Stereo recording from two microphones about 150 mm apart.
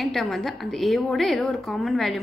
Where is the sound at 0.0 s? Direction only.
Centre (ahead or behind).